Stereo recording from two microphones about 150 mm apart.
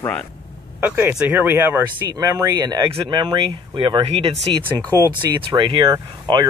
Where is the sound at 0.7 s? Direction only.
10° right (ahead or behind); by 4.3 s 35° right (ahead or behind).